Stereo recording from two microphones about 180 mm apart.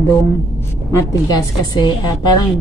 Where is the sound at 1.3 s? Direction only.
25° left (ahead or behind).